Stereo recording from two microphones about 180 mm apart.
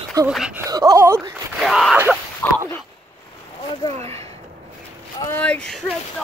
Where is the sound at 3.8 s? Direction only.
35° right (ahead or behind).